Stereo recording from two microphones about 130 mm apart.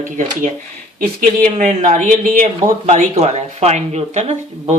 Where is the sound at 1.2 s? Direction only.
75° right (ahead or behind).